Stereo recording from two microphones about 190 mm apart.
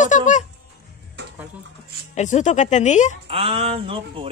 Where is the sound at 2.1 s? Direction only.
40° left (ahead or behind).